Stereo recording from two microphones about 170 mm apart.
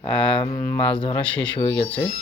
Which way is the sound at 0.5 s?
10° left (ahead or behind).